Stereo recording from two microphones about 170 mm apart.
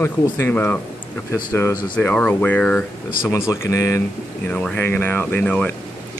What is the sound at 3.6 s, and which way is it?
Speech, 20° left (ahead or behind).